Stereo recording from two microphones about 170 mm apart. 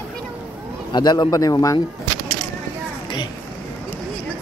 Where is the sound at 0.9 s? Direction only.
25° left (ahead or behind).